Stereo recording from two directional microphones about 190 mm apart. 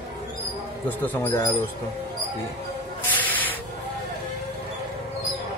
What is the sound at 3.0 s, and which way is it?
Spray, 10° left (ahead or behind).